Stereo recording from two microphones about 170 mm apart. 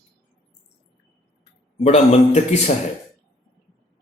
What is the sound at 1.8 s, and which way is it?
Speech, 40° left (ahead or behind).